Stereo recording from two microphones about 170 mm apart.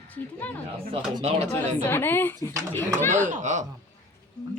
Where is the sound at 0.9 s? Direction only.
35° right (ahead or behind).